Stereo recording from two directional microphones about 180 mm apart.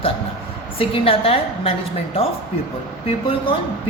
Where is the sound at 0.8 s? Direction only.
30° left (ahead or behind).